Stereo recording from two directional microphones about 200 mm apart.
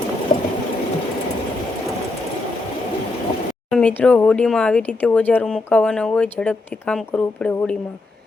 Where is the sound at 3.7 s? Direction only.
5° left (ahead or behind).